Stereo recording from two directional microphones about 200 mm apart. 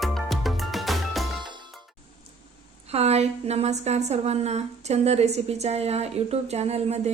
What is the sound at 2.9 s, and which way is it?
A woman's voice, 30° right (ahead or behind).